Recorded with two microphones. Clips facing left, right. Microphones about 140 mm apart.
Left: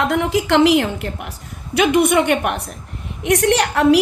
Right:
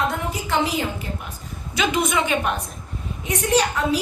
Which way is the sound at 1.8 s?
60° left (ahead or behind).